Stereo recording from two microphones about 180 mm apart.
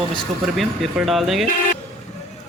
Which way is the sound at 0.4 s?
Centre (ahead or behind).